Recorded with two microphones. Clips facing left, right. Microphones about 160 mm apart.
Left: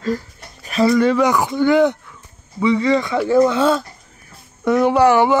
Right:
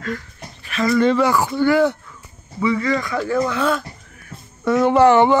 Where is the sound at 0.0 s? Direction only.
35° left (ahead or behind).